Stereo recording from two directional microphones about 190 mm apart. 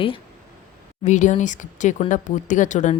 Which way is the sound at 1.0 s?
40° left (ahead or behind).